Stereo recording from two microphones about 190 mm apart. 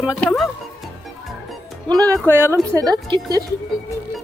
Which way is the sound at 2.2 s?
10° right (ahead or behind).